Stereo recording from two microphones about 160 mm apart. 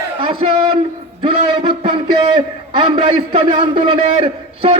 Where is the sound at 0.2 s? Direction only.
30° right (ahead or behind).